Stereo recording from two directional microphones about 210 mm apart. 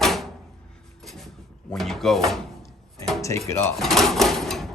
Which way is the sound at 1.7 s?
Centre (ahead or behind).